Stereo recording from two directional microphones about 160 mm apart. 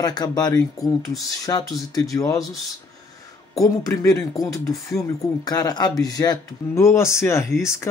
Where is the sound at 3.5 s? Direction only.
20° left (ahead or behind).